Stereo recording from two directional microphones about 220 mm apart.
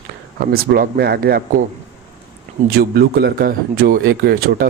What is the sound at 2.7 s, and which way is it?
Speech, 45° right (ahead or behind).